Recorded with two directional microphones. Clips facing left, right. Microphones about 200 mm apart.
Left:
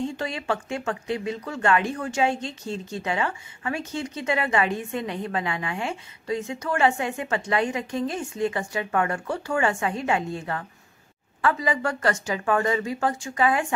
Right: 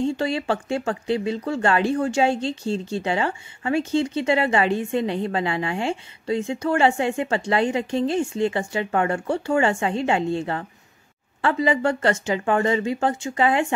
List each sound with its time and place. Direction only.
0.0 s speech: 30° right (ahead or behind)